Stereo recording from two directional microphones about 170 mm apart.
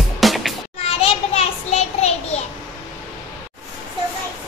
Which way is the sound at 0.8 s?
35° left (ahead or behind).